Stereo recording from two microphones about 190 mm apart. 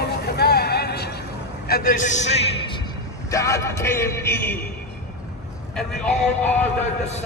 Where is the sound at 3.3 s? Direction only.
15° left (ahead or behind).